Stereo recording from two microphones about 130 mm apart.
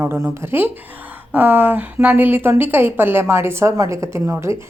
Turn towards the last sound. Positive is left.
turn(degrees=-20)  # may be behind; listen again after turning